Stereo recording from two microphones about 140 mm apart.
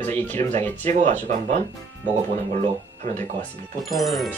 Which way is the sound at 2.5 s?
60° right (ahead or behind).